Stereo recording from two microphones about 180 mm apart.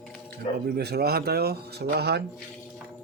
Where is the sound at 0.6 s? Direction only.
65° right (ahead or behind).